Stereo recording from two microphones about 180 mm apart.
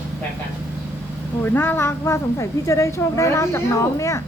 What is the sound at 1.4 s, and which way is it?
A woman's voice, 10° left (ahead or behind).